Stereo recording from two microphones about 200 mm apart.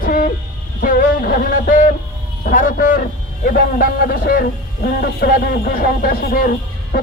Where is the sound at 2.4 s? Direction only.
45° left (ahead or behind).